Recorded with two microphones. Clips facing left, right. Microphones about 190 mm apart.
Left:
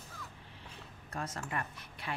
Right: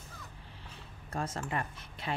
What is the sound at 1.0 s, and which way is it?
A woman's voice, 30° right (ahead or behind).